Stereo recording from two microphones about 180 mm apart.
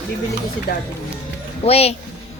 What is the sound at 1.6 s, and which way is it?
Child singing, 35° left (ahead or behind).